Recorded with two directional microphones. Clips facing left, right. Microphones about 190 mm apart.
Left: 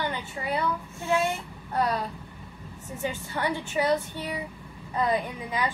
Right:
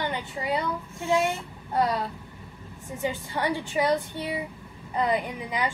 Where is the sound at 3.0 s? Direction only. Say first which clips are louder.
Right 2 dB; 15° right (ahead or behind).